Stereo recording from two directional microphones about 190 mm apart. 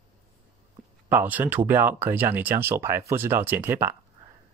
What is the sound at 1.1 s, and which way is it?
Speech, 10° right (ahead or behind).